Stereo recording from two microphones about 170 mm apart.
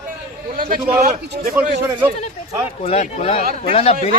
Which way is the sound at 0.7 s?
60° right (ahead or behind).